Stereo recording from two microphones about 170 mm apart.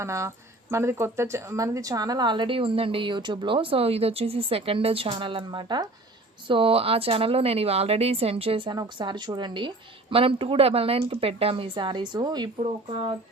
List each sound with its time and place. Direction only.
0.0 s speech: 15° right (ahead or behind)